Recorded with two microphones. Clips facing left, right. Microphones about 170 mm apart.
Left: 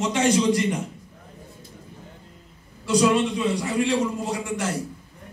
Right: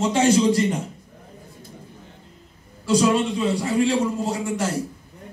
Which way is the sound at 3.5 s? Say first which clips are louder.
Right 2 dB; 30° right (ahead or behind).